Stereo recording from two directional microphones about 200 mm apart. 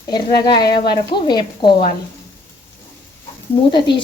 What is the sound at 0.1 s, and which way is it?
A woman's voice, 20° left (ahead or behind).